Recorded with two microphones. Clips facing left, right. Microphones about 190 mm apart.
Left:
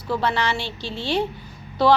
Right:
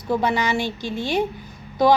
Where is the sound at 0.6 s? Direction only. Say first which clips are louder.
Right 5 dB; 45° right (ahead or behind).